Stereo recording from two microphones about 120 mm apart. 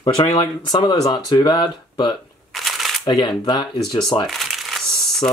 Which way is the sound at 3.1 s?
40° left (ahead or behind).